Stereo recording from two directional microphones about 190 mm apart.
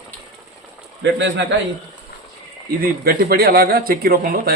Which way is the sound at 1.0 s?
70° right (ahead or behind).